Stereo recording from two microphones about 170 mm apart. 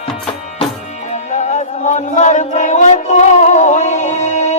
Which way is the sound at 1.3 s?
40° left (ahead or behind).